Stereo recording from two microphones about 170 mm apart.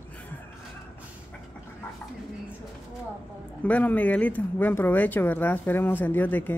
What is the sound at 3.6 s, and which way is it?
Speech, 10° left (ahead or behind).